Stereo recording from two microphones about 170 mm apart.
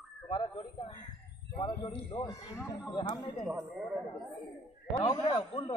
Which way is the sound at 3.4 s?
5° right (ahead or behind).